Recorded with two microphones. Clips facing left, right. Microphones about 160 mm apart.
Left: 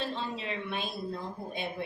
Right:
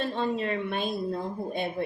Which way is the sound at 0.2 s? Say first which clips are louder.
Right 8 dB; 50° right (ahead or behind).